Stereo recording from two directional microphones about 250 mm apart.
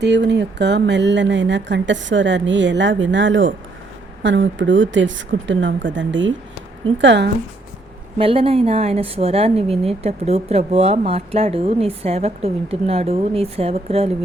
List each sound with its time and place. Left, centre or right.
0.0 s speech: right
8.2 s a woman's voice: right